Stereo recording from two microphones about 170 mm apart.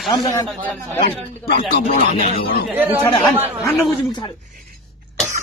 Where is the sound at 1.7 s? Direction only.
60° left (ahead or behind).